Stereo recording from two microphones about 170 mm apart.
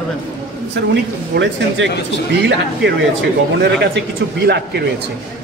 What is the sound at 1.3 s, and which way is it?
Speech, 90° right.